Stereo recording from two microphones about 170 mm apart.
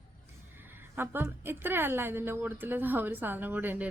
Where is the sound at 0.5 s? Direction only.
10° right (ahead or behind).